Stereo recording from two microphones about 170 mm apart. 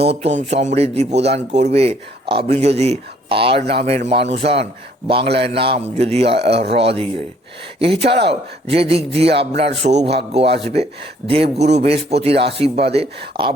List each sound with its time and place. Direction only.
0.0 s speech: 35° right (ahead or behind)
11.5 s speech: 40° right (ahead or behind)